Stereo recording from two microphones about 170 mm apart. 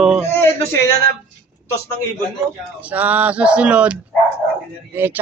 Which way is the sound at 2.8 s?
10° right (ahead or behind).